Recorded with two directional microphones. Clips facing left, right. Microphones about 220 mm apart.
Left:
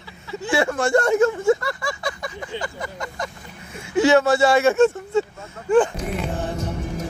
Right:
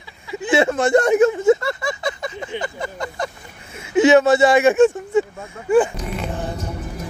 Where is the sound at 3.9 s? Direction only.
20° right (ahead or behind).